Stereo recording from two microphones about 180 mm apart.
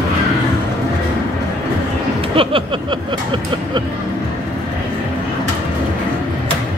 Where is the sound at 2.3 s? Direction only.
30° right (ahead or behind).